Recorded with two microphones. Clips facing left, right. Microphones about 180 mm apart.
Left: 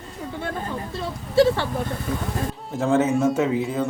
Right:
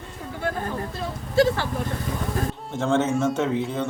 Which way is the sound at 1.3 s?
25° left (ahead or behind).